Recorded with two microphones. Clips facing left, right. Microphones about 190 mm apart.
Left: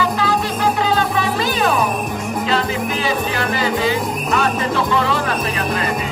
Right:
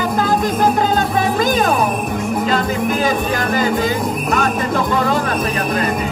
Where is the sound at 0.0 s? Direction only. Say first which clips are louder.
Right 2 dB; 45° right (ahead or behind).